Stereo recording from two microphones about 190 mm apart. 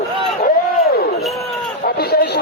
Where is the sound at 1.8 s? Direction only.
55° left (ahead or behind).